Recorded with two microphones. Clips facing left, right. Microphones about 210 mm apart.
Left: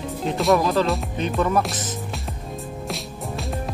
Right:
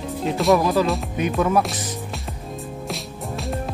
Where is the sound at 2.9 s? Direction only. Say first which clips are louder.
Even; centre (ahead or behind).